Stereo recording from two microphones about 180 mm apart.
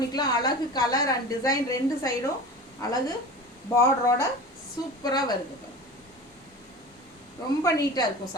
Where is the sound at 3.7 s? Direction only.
15° left (ahead or behind).